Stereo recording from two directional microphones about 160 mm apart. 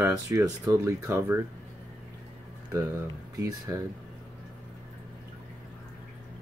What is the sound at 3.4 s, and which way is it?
Speech, 20° right (ahead or behind).